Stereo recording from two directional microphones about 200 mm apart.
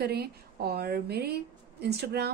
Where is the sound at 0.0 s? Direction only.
50° right (ahead or behind).